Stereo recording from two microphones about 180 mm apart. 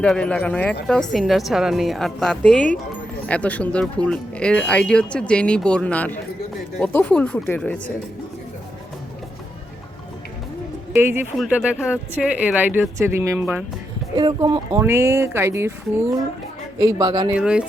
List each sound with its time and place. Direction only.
0.0 s a woman's voice: 5° left (ahead or behind)
10.9 s speech: 10° right (ahead or behind)
14.2 s speech: 25° right (ahead or behind)
14.8 s speech: 15° right (ahead or behind)
17.3 s a woman's voice: 5° right (ahead or behind)